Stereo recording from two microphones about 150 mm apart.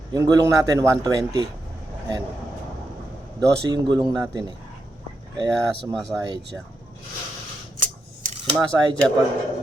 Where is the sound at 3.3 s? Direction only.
30° right (ahead or behind).